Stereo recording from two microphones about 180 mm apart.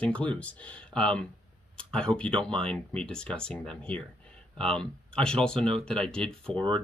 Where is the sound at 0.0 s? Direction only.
5° left (ahead or behind).